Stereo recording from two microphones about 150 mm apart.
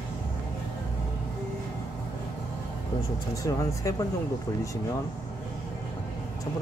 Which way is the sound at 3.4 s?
20° left (ahead or behind).